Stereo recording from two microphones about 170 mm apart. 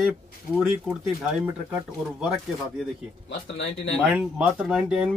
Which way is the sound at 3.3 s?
90° left.